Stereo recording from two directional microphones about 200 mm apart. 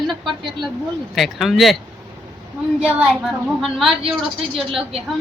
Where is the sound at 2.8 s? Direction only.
Centre (ahead or behind).